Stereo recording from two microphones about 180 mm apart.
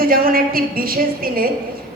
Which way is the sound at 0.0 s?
55° right (ahead or behind).